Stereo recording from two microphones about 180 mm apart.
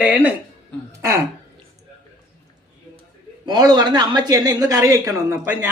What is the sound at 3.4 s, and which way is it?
Speech, 25° right (ahead or behind).